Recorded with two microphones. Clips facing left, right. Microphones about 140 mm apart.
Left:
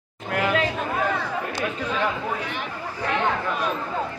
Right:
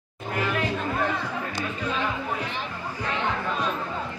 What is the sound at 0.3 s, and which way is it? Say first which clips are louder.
Chatter: left 4 dB; 70° left (ahead or behind).